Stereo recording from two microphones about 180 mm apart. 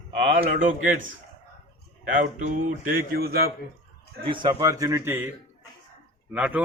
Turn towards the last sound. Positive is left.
turn(degrees=-10)  # may be behind; listen again after turning